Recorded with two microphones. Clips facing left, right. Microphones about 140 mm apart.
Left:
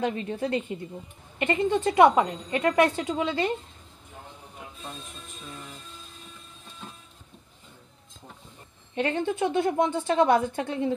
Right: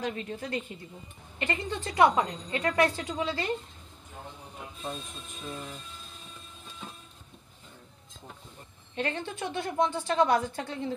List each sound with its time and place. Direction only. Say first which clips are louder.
0.0 s speech: left 6 dB; 25° left (ahead or behind)
5.5 s music: right 4 dB; 10° right (ahead or behind)
8.9 s speech: left 6 dB; 20° left (ahead or behind)